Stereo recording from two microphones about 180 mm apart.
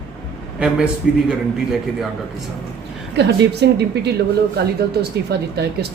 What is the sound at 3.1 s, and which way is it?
Speech, 70° right (ahead or behind).